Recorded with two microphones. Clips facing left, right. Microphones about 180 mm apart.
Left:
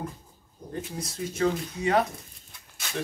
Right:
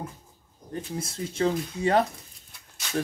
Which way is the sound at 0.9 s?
30° right (ahead or behind).